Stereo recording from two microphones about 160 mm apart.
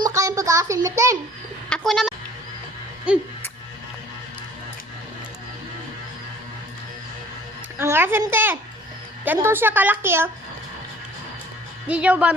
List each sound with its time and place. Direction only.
0.0 s a sound: 20° right (ahead or behind)
1.7 s speech: centre (ahead or behind)
7.8 s a woman's voice: 15° right (ahead or behind)
11.9 s a woman's voice: 10° right (ahead or behind)